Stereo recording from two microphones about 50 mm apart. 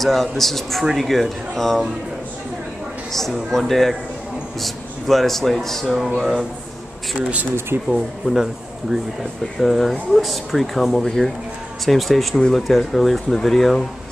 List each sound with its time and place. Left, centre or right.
0.0 s speech: centre
3.1 s speech: centre
5.9 s speech: centre
7.2 s speech: right
7.9 s speech: centre